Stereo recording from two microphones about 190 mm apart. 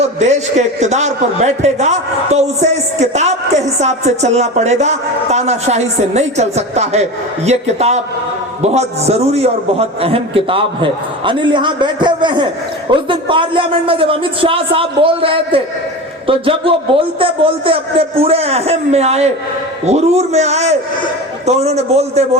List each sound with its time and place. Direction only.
0.0 s a man's voice: 35° right (ahead or behind)